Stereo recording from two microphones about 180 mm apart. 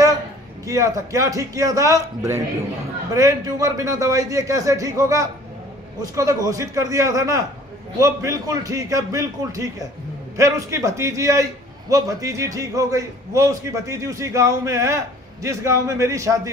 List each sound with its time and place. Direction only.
0.7 s a man's voice: 20° right (ahead or behind)